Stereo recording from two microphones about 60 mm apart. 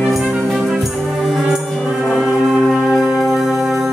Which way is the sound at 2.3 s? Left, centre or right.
Centre.